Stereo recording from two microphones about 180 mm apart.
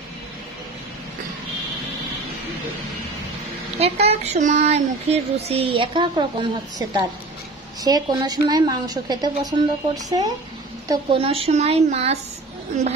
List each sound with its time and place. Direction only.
3.7 s a woman's voice: 35° right (ahead or behind)